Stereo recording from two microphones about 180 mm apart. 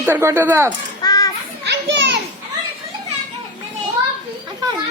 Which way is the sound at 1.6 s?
75° right (ahead or behind).